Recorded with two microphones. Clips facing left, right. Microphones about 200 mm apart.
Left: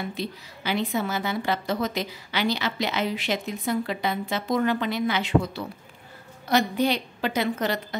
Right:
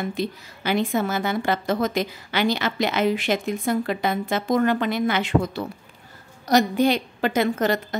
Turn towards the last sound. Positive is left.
turn(degrees=-45)  # may be behind; listen again after turning